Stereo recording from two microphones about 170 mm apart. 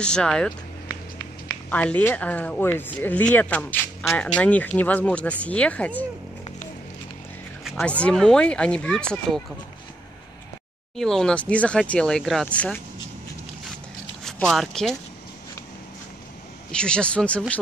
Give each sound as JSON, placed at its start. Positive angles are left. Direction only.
{"t": 0.0, "sound": "speech", "side_deg": 5}
{"t": 1.7, "sound": "speech", "side_deg": 5}
{"t": 7.7, "sound": "speech", "side_deg": 5}
{"t": 11.0, "sound": "speech", "side_deg": 5}
{"t": 14.2, "sound": "speech", "side_deg": 0}
{"t": 16.7, "sound": "speech", "side_deg": 5}